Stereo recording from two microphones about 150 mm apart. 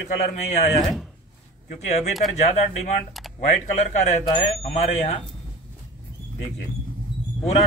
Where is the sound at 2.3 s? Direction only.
50° left (ahead or behind).